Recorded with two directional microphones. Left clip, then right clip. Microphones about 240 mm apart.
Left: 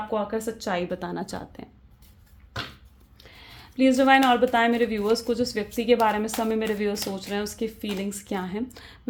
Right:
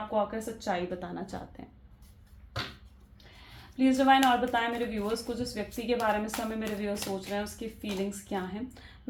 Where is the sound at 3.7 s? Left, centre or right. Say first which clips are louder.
Left 5 dB; left.